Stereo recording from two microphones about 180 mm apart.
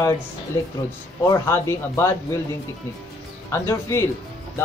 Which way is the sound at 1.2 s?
15° left (ahead or behind).